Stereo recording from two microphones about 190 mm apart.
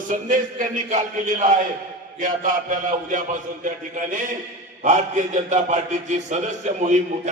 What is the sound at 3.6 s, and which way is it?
A man's voice, 40° right (ahead or behind).